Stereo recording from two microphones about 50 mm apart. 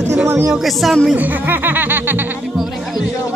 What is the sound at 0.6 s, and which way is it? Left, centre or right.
Speech, centre.